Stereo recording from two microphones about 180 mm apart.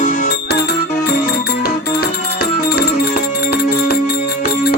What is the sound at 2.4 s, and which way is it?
Music, 55° left (ahead or behind).